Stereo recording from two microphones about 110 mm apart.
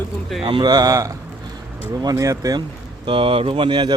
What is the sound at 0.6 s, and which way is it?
Speech, 35° right (ahead or behind).